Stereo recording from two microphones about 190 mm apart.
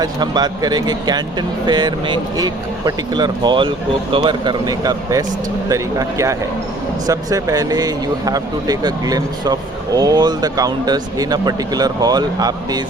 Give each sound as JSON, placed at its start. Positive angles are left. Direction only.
{"t": 0.0, "sound": "speech", "side_deg": -20}